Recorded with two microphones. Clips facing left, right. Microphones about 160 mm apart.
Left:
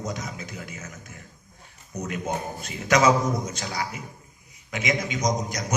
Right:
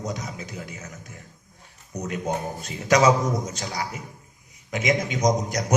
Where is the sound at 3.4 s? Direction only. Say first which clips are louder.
Even; 40° right (ahead or behind); by 5.6 s 55° right (ahead or behind).